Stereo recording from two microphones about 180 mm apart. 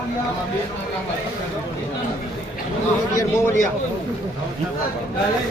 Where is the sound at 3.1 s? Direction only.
20° left (ahead or behind).